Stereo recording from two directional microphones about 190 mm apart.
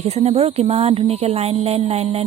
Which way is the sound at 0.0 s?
35° right (ahead or behind).